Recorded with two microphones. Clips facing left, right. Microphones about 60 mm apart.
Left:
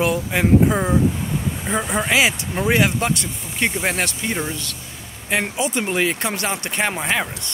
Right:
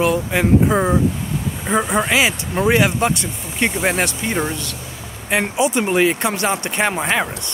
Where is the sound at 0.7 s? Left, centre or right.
Right.